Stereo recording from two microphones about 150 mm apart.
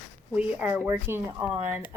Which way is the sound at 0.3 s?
10° right (ahead or behind).